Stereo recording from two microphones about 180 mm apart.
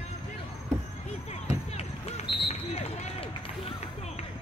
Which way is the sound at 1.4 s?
35° left (ahead or behind).